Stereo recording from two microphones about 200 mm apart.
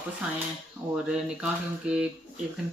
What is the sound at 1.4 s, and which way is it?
Speech, 5° right (ahead or behind).